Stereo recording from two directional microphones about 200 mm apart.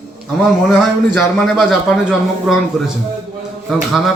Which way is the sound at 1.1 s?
Centre (ahead or behind).